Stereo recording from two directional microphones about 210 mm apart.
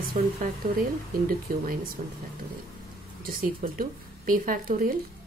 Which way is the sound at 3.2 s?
45° right (ahead or behind).